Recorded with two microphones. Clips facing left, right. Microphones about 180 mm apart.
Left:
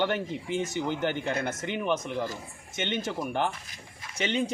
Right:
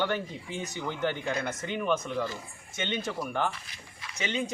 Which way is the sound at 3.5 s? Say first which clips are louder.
Even; 45° left (ahead or behind).